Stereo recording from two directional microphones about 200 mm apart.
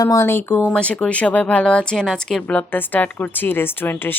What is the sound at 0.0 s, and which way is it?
Speech, 15° left (ahead or behind).